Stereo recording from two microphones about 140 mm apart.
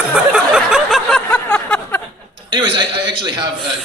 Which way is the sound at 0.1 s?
5° right (ahead or behind).